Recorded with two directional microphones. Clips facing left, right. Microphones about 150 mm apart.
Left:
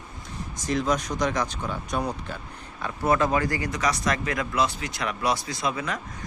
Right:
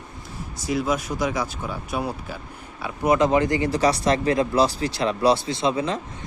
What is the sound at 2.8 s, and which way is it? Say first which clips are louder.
Speech: right 3 dB; 15° right (ahead or behind).